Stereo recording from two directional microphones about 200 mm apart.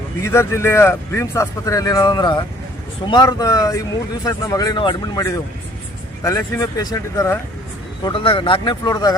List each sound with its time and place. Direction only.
0.2 s speech: 15° left (ahead or behind)
8.0 s speech: 25° left (ahead or behind)